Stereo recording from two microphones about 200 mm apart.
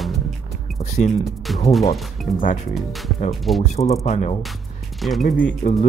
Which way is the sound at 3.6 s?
35° left (ahead or behind).